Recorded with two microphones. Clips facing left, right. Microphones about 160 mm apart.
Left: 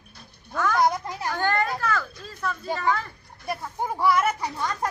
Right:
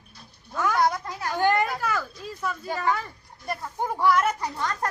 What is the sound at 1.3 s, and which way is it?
A woman's voice, 15° right (ahead or behind).